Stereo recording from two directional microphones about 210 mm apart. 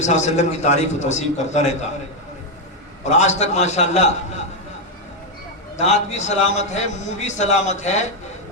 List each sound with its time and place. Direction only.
0.0 s a man's voice: 35° left (ahead or behind)
3.0 s a man's voice: 35° left (ahead or behind)
5.7 s a man's voice: 35° left (ahead or behind)